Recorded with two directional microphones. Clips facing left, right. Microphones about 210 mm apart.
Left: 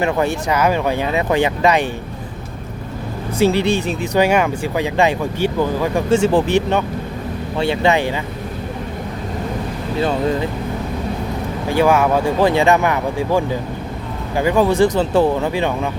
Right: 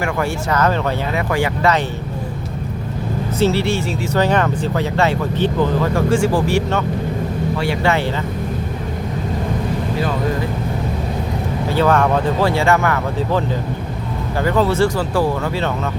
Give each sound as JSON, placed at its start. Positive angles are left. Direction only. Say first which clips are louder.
{"t": 0.0, "sound": "speech", "louder": "left 3 dB", "side_deg": 20}
{"t": 3.3, "sound": "speech", "louder": "left 2 dB", "side_deg": 15}
{"t": 11.7, "sound": "speech", "louder": "left 1 dB", "side_deg": 10}